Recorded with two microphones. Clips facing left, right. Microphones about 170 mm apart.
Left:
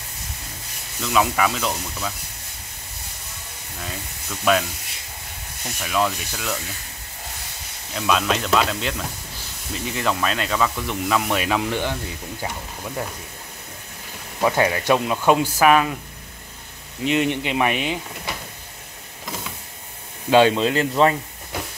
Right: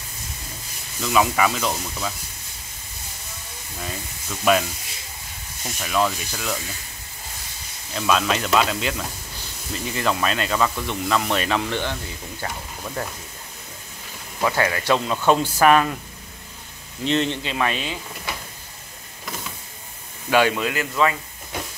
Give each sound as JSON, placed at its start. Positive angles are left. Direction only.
{"t": 1.0, "sound": "speech", "side_deg": 0}
{"t": 4.5, "sound": "speech", "side_deg": -5}
{"t": 5.8, "sound": "speech", "side_deg": 0}
{"t": 7.9, "sound": "speech", "side_deg": 0}
{"t": 14.4, "sound": "speech", "side_deg": 15}
{"t": 17.0, "sound": "speech", "side_deg": 10}
{"t": 20.2, "sound": "speech", "side_deg": 25}